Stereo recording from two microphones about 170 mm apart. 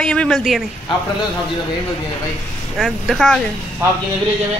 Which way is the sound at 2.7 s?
Centre (ahead or behind).